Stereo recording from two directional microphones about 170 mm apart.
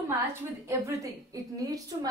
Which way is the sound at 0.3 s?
15° right (ahead or behind).